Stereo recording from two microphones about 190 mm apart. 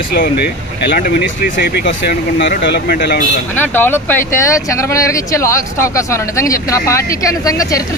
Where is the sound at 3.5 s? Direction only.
10° left (ahead or behind).